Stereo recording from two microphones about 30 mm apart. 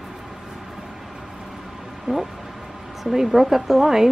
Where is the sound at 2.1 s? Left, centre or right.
Right.